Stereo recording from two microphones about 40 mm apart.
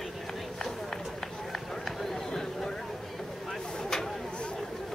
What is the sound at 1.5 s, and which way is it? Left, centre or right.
Run, centre.